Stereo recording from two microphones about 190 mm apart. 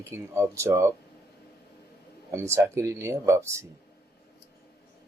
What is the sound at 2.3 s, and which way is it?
Speech, 15° right (ahead or behind).